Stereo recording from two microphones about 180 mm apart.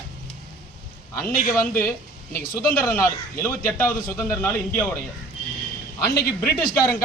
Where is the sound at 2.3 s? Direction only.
50° left (ahead or behind).